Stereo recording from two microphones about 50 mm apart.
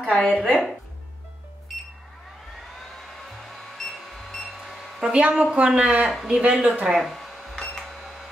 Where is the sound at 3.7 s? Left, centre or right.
Centre.